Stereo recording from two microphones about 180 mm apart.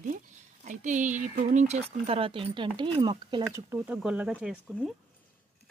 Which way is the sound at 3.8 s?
Centre (ahead or behind).